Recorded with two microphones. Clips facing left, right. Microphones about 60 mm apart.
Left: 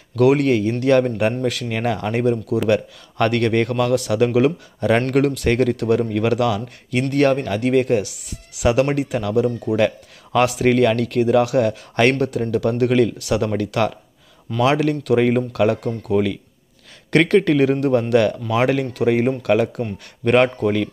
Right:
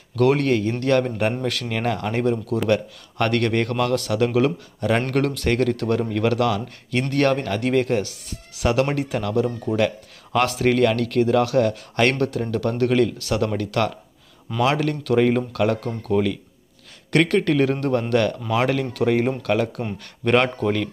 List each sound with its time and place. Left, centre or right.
0.1 s speech: centre
1.8 s speech: left
2.4 s speech: centre
2.7 s speech: left
5.1 s speech: centre
6.9 s speech: centre
9.8 s speech: left
17.7 s speech: centre
18.1 s speech: left
19.8 s speech: right
20.2 s speech: centre